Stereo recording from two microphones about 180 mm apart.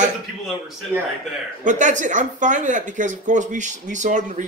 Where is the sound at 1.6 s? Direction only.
45° right (ahead or behind).